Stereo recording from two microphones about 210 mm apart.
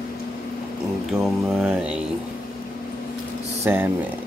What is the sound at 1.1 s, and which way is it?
Mantra, 5° right (ahead or behind).